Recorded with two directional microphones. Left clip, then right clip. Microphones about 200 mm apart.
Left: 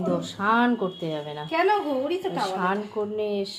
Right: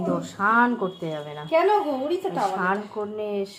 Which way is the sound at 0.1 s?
5° left (ahead or behind).